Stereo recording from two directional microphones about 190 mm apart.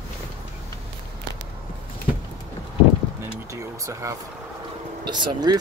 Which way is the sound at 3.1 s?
15° right (ahead or behind).